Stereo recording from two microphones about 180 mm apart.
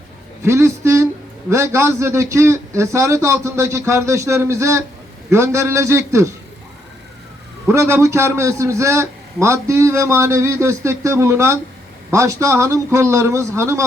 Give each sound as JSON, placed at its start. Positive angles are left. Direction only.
{"t": 0.4, "sound": "a man's voice", "side_deg": -15}
{"t": 7.7, "sound": "a man's voice", "side_deg": -15}